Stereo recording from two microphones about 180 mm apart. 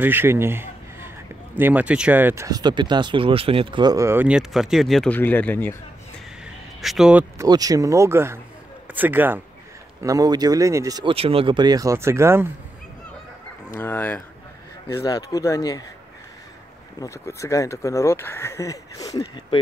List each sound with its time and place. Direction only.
0.0 s a man's voice: 10° right (ahead or behind); by 5.8 s 10° left (ahead or behind)
6.4 s a sound: centre (ahead or behind)
7.3 s speech: 20° right (ahead or behind)
13.7 s speech: 10° left (ahead or behind)
17.0 s speech: 15° left (ahead or behind)